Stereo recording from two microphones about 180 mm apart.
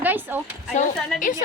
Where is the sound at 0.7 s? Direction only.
45° left (ahead or behind).